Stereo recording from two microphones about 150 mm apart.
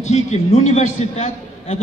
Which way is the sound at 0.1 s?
50° left (ahead or behind).